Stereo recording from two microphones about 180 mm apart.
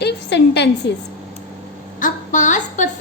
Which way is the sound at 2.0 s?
45° left (ahead or behind).